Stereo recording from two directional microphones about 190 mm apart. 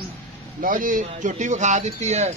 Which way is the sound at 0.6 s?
45° right (ahead or behind).